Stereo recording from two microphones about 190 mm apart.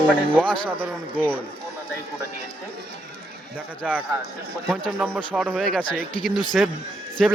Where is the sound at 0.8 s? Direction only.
10° right (ahead or behind).